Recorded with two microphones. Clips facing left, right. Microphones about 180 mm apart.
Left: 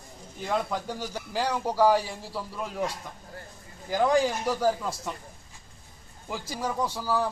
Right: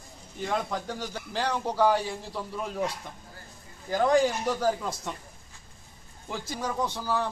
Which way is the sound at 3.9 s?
5° left (ahead or behind).